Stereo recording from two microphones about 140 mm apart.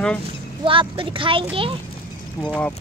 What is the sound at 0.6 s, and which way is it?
Speech, 40° right (ahead or behind).